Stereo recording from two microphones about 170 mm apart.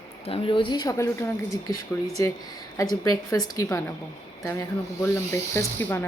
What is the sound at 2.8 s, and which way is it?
Speech, 20° left (ahead or behind).